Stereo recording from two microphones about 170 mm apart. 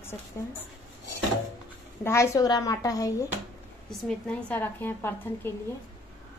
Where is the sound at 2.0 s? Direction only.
15° left (ahead or behind).